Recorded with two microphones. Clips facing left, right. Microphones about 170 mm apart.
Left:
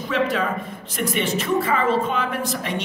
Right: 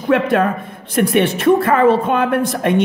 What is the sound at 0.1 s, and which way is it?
A woman's voice, 55° right (ahead or behind).